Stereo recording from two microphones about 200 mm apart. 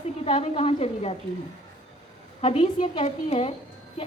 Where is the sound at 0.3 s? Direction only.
30° left (ahead or behind).